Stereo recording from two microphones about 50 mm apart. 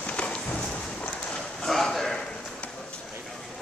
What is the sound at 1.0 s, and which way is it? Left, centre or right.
Clip-clop, centre.